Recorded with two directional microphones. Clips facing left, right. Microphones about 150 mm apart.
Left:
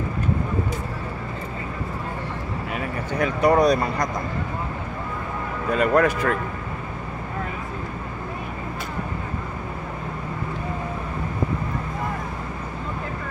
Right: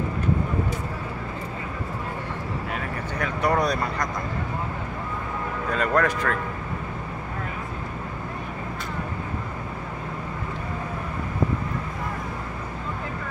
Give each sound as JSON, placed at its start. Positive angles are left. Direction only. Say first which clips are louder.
{"t": 3.2, "sound": "speech", "louder": "left 6 dB", "side_deg": 15}
{"t": 5.7, "sound": "speech", "louder": "left 4 dB", "side_deg": 10}